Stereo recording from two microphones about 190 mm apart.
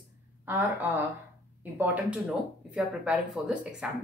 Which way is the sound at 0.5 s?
10° right (ahead or behind).